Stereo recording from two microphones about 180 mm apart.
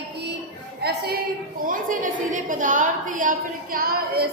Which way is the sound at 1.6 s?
50° right (ahead or behind).